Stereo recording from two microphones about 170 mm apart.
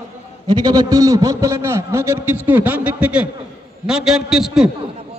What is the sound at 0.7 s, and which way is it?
A man's voice, 20° right (ahead or behind).